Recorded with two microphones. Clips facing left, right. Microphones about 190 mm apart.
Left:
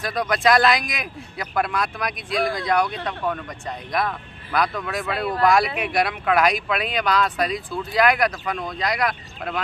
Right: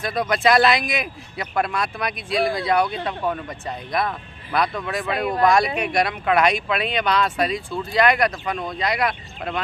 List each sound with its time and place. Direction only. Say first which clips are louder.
0.0 s speech: right 1 dB; centre (ahead or behind)
5.1 s speech: right 1 dB; 15° right (ahead or behind)
5.8 s speech: right 1 dB; centre (ahead or behind)